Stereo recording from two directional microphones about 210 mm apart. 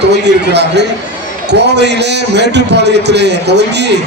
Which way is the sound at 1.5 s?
55° right (ahead or behind).